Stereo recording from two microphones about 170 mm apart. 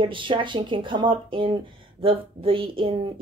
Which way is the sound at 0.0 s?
30° right (ahead or behind).